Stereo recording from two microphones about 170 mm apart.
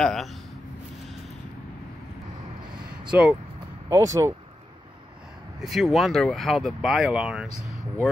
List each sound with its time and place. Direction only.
0.0 s speech: centre (ahead or behind)
3.1 s speech: 5° right (ahead or behind)
3.9 s speech: 20° right (ahead or behind)
5.6 s speech: centre (ahead or behind)